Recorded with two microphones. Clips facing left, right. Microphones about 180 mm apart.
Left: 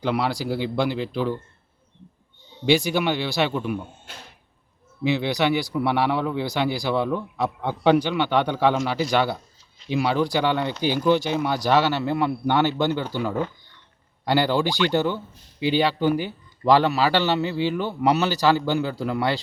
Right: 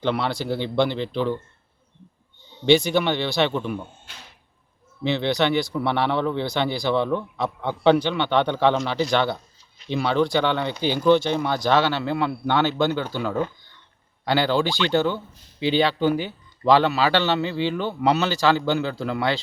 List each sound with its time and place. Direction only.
0.0 s speech: 5° left (ahead or behind)
2.6 s a man's voice: 5° left (ahead or behind)
5.0 s a man's voice: 5° left (ahead or behind)